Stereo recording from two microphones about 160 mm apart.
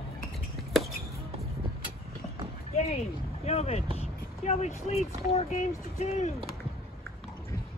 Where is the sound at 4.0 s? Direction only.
40° left (ahead or behind).